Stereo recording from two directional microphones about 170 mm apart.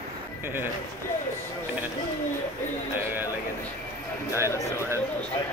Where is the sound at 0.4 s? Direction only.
15° right (ahead or behind).